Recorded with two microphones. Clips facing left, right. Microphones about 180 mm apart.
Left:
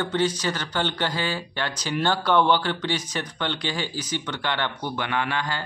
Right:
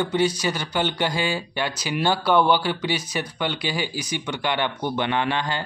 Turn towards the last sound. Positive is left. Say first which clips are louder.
# right 3 dB
turn(degrees=-25)  # may be behind; listen again after turning